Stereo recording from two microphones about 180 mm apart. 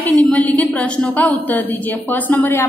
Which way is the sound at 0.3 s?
10° left (ahead or behind).